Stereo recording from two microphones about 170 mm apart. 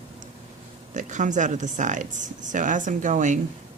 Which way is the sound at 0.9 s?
45° right (ahead or behind).